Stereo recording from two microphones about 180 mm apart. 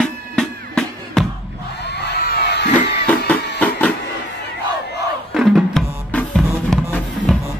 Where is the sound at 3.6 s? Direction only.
10° left (ahead or behind).